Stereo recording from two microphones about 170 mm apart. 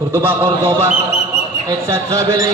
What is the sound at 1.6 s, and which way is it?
Speech, 20° right (ahead or behind).